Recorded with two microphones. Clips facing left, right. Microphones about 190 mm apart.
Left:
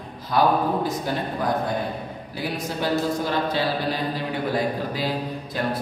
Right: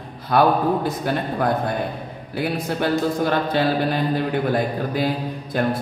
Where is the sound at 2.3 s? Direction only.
60° right (ahead or behind).